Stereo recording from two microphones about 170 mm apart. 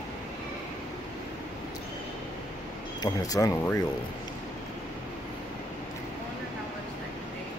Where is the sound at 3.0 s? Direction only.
20° left (ahead or behind).